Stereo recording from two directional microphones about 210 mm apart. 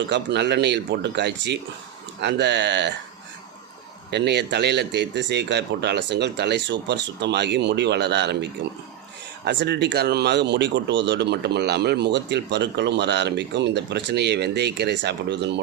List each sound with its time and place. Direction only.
0.1 s speech: 55° right (ahead or behind)
4.1 s speech: 55° right (ahead or behind)